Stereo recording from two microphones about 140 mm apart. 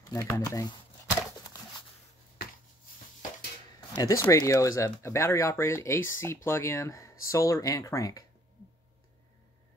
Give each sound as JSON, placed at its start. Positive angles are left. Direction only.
{"t": 0.0, "sound": "speech", "side_deg": 25}
{"t": 3.9, "sound": "speech", "side_deg": 25}